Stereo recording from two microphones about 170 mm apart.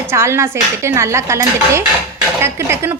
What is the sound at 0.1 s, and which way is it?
Speech, 15° right (ahead or behind).